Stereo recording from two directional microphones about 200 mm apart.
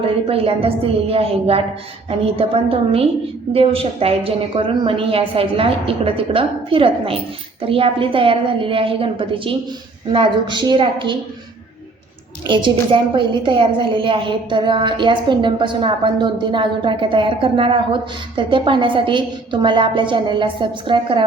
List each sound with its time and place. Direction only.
0.0 s a woman's voice: 30° right (ahead or behind)
12.5 s a woman's voice: 25° right (ahead or behind)